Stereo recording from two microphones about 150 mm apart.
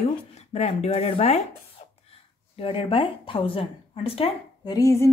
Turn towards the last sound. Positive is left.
turn(degrees=20)  # may be behind; listen again after turning